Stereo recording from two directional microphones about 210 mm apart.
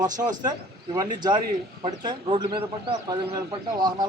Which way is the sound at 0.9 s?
20° right (ahead or behind).